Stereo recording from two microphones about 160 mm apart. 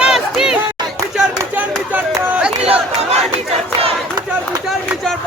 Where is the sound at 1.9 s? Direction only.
5° right (ahead or behind).